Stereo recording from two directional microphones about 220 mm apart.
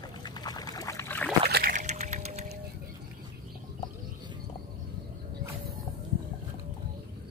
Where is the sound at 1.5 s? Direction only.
45° right (ahead or behind).